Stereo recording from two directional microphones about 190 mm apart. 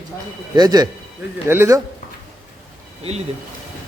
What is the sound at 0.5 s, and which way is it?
Speech, 20° right (ahead or behind).